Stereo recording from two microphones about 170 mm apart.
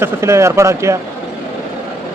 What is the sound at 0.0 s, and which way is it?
Speech, 15° right (ahead or behind).